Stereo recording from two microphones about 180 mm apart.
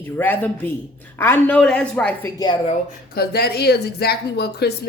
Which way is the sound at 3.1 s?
60° left (ahead or behind).